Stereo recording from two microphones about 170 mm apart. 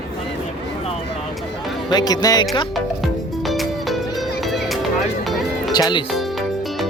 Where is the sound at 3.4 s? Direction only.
Centre (ahead or behind).